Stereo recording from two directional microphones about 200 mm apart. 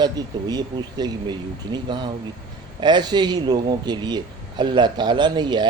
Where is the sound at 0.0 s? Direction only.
20° right (ahead or behind).